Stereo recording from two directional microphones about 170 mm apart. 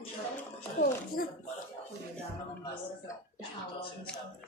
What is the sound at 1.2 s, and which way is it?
Speech, 60° left (ahead or behind).